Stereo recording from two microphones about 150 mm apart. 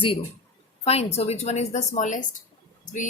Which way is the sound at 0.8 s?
45° left (ahead or behind).